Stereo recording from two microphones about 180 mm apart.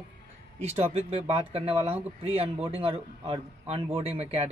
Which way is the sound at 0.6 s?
35° right (ahead or behind).